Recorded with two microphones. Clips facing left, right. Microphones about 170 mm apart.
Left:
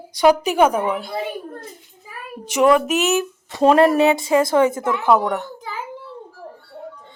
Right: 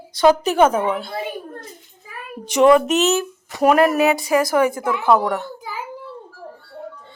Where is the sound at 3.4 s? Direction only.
25° left (ahead or behind).